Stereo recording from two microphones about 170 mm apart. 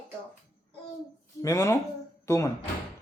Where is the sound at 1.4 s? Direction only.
20° left (ahead or behind).